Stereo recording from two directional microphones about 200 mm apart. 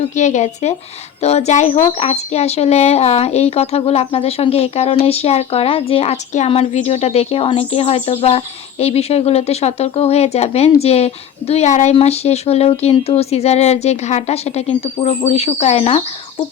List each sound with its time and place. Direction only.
0.2 s a woman's voice: 35° left (ahead or behind)